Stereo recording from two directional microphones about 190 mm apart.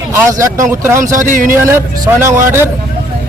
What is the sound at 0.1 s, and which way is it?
Speech, 15° right (ahead or behind).